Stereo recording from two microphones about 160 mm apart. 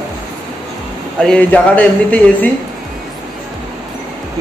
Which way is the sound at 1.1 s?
5° left (ahead or behind).